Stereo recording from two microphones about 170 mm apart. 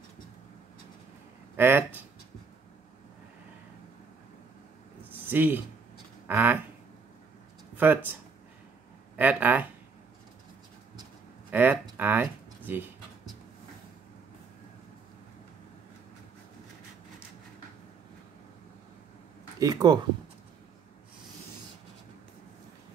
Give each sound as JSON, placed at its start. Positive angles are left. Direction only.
{"t": 1.6, "sound": "speech", "side_deg": -10}
{"t": 5.2, "sound": "speech", "side_deg": -10}
{"t": 6.2, "sound": "duck", "side_deg": -10}
{"t": 7.7, "sound": "speech", "side_deg": -10}
{"t": 11.5, "sound": "speech", "side_deg": -10}
{"t": 12.0, "sound": "a sound", "side_deg": -10}
{"t": 19.6, "sound": "speech", "side_deg": -25}